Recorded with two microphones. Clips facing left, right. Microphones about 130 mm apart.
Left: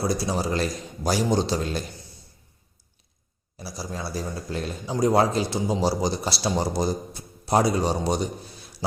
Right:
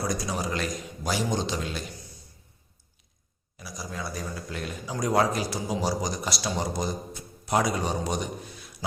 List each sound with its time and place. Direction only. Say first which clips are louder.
0.0 s a man's voice: left 4 dB; 30° left (ahead or behind)
3.6 s a man's voice: left 3 dB; 30° left (ahead or behind)